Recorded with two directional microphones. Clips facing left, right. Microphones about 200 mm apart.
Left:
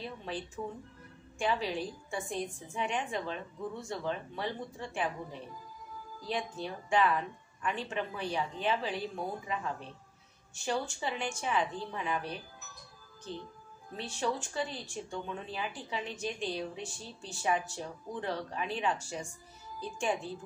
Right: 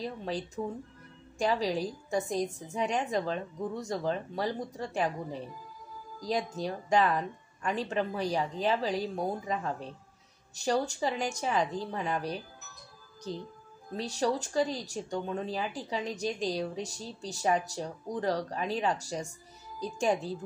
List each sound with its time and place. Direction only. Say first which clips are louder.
0.0 s speech: right 5 dB; 40° right (ahead or behind)